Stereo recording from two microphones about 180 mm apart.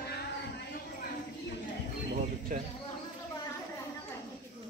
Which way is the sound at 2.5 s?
50° right (ahead or behind).